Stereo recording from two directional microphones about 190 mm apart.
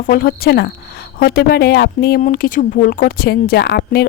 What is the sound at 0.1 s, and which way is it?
A woman's voice, 55° left (ahead or behind).